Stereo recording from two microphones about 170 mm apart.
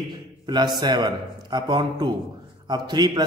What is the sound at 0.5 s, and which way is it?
A man's voice, 25° right (ahead or behind).